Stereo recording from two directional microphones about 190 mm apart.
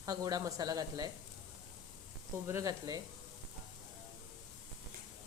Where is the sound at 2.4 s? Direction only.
15° right (ahead or behind).